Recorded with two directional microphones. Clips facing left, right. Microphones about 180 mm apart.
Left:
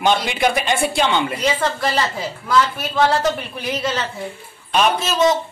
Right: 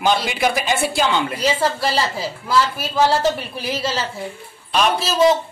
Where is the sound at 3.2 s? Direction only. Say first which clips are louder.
Right 1 dB; 30° right (ahead or behind).